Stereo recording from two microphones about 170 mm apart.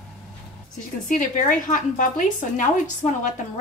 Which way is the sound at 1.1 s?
50° left (ahead or behind).